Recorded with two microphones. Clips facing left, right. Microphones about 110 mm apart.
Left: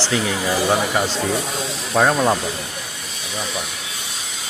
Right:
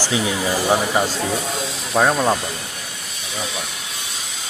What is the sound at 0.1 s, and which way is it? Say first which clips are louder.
Speech: even; 15° right (ahead or behind).